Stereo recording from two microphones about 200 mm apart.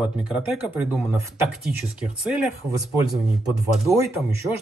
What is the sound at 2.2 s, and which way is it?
Speech, 5° right (ahead or behind).